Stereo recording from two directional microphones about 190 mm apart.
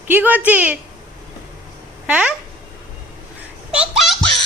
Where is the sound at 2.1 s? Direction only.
5° right (ahead or behind).